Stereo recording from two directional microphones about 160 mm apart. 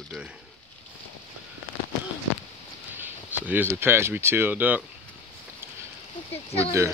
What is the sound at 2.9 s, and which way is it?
Speech, 10° right (ahead or behind).